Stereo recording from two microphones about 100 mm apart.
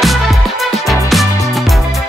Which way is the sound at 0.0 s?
Centre (ahead or behind).